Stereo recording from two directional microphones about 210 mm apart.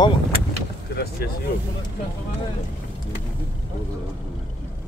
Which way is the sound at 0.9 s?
50° left (ahead or behind).